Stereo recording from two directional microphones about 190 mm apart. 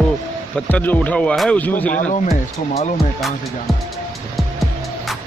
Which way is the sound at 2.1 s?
35° left (ahead or behind).